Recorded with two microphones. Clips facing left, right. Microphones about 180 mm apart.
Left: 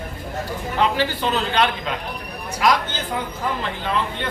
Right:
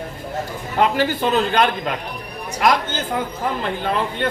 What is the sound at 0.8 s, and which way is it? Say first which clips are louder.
A man's voice: right 3 dB; 50° right (ahead or behind).